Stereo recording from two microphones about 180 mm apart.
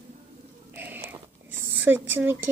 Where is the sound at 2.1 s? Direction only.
10° right (ahead or behind).